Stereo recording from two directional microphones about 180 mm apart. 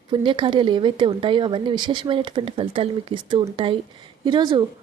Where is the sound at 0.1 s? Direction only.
25° right (ahead or behind).